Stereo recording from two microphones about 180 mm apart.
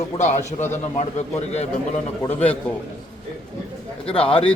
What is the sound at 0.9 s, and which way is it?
Speech, 35° left (ahead or behind).